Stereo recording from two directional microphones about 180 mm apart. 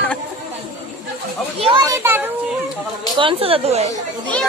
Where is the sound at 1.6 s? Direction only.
25° right (ahead or behind).